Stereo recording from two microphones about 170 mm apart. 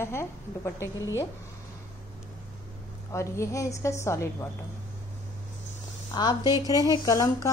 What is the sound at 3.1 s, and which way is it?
A woman's voice, 15° left (ahead or behind).